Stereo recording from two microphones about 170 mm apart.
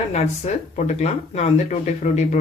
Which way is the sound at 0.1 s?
40° left (ahead or behind).